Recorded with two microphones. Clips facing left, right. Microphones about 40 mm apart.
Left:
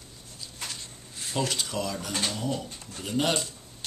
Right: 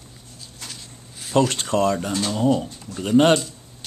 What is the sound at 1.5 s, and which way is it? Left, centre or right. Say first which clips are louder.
Speech: right 10 dB; right.